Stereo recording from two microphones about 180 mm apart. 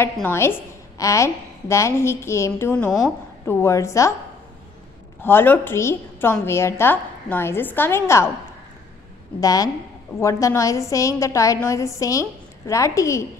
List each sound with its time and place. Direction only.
0.0 s a woman's voice: 15° left (ahead or behind)
5.2 s a woman's voice: 10° left (ahead or behind)
9.4 s a woman's voice: 20° left (ahead or behind)